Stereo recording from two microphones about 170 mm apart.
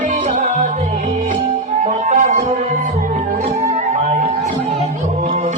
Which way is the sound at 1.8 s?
45° right (ahead or behind).